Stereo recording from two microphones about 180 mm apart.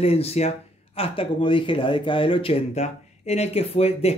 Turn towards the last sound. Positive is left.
turn(degrees=35)  # may be behind; listen again after turning